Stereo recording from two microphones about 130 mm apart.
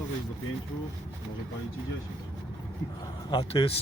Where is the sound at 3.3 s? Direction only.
40° left (ahead or behind).